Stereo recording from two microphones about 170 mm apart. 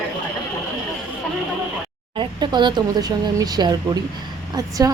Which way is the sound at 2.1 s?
25° right (ahead or behind).